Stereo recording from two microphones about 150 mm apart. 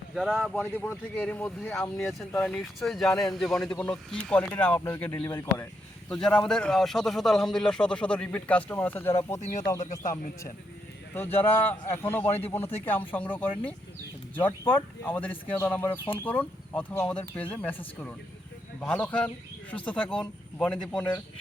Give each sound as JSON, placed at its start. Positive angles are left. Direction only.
{"t": 0.1, "sound": "speech", "side_deg": -5}
{"t": 0.7, "sound": "a man's voice", "side_deg": 15}
{"t": 6.1, "sound": "speech", "side_deg": 5}
{"t": 11.1, "sound": "a man's voice", "side_deg": 15}